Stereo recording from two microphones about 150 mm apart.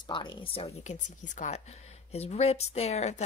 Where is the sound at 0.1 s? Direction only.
30° left (ahead or behind).